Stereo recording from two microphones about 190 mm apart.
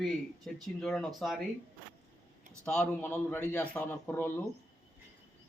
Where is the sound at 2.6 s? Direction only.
5° left (ahead or behind).